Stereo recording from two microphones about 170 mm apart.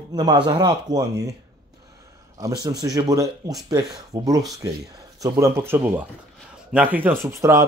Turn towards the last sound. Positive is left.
turn(degrees=-15)  # may be behind; listen again after turning